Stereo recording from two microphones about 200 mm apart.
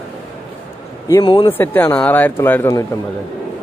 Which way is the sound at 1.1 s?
20° left (ahead or behind).